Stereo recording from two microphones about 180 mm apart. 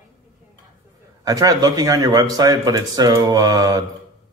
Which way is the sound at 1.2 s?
20° right (ahead or behind).